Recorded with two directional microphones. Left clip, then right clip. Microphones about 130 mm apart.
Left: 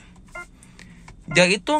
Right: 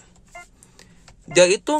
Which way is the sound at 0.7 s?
50° right (ahead or behind).